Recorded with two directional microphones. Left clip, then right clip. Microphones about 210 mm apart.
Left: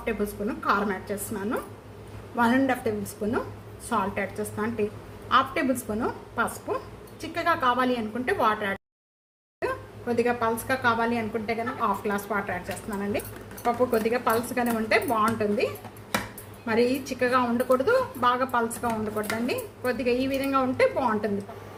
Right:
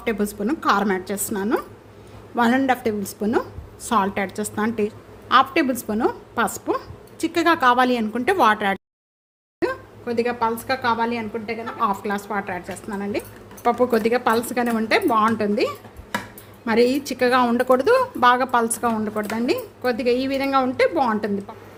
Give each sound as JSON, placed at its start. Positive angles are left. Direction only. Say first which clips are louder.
{"t": 0.0, "sound": "a woman's voice", "louder": "right 5 dB", "side_deg": -55}
{"t": 13.7, "sound": "a woman's voice", "louder": "right 5 dB", "side_deg": -55}